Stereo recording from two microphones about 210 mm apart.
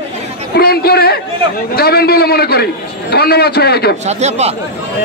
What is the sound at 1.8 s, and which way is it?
A man's voice, 45° left (ahead or behind).